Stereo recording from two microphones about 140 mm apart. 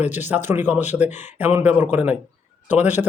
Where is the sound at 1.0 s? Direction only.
55° left (ahead or behind).